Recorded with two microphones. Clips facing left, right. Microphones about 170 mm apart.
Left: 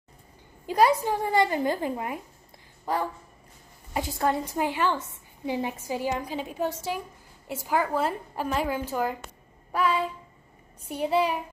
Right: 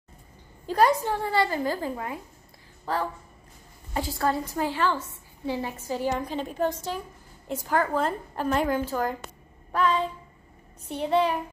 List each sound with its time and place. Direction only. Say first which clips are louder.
0.7 s a woman's voice: even; 10° left (ahead or behind)
9.7 s a sound: right 1 dB; 10° left (ahead or behind)
10.9 s a woman's voice: right 1 dB; 10° left (ahead or behind)